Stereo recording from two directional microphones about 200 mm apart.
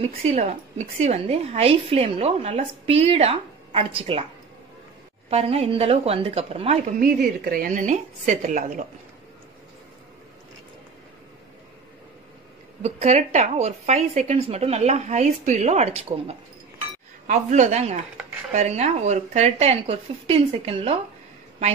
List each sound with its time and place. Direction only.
0.2 s a woman's voice: 35° right (ahead or behind)
5.3 s a woman's voice: 30° right (ahead or behind)
12.8 s a woman's voice: 35° right (ahead or behind)